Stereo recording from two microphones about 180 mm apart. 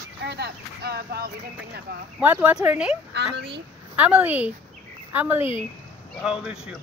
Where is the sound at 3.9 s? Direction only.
10° right (ahead or behind).